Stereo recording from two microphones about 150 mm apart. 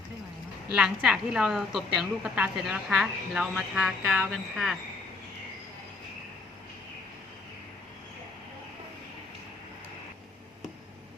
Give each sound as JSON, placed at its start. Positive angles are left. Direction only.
{"t": 0.7, "sound": "a woman's voice", "side_deg": -5}